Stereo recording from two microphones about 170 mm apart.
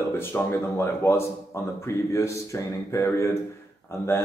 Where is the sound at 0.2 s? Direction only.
15° left (ahead or behind).